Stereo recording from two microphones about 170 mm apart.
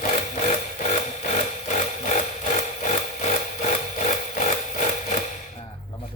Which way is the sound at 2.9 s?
45° left (ahead or behind).